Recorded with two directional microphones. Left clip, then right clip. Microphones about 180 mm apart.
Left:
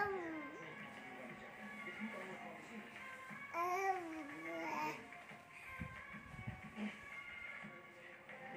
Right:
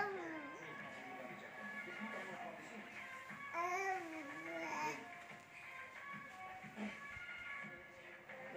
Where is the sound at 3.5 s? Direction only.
25° left (ahead or behind).